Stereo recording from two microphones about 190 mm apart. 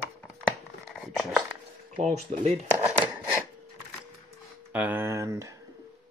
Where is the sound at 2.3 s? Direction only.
35° right (ahead or behind).